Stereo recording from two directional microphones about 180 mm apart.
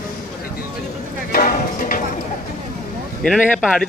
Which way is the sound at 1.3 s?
50° left (ahead or behind).